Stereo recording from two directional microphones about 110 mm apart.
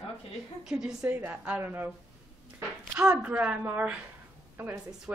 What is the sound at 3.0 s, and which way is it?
Speech, 10° right (ahead or behind).